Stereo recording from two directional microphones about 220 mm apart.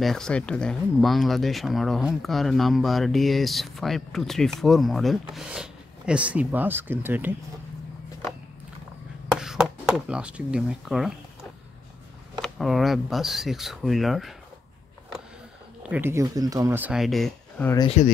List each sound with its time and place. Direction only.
0.0 s speech: centre (ahead or behind)
9.4 s speech: 5° right (ahead or behind)
12.4 s speech: centre (ahead or behind)
15.8 s speech: 10° right (ahead or behind)
17.7 s speech: 30° left (ahead or behind)